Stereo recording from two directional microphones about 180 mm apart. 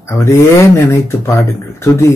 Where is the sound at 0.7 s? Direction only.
15° left (ahead or behind).